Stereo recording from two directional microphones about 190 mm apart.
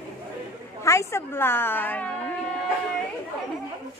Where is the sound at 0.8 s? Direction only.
15° left (ahead or behind).